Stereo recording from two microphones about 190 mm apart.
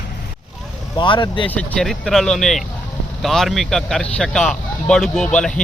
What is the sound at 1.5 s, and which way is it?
Speech, 5° left (ahead or behind).